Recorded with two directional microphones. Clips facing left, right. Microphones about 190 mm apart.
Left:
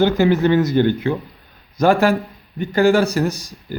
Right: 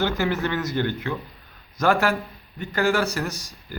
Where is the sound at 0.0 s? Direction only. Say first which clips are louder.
Left 9 dB; 20° left (ahead or behind).